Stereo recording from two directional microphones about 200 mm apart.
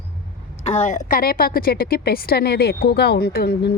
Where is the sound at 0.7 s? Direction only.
35° left (ahead or behind).